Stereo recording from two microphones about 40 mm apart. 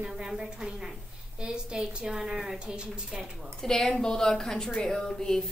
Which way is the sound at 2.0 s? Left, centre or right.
Centre.